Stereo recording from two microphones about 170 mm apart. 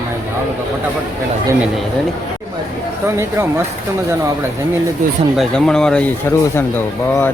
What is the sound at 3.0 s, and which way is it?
Speech, 15° right (ahead or behind).